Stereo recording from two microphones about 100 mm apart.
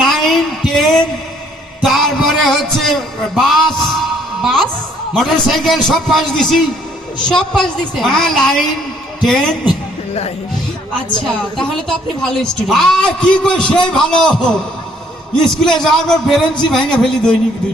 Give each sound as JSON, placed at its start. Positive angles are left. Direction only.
{"t": 0.0, "sound": "a sound", "side_deg": 0}
{"t": 5.1, "sound": "a man's voice", "side_deg": 0}
{"t": 11.5, "sound": "a man's voice", "side_deg": 5}